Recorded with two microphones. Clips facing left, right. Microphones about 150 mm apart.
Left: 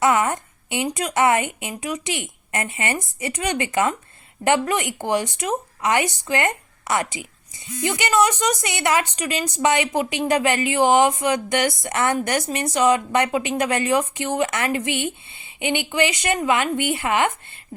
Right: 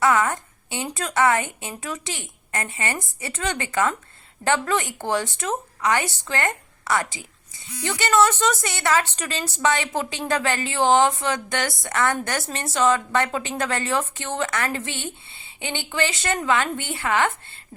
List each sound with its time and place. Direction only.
0.0 s a woman's voice: 20° left (ahead or behind)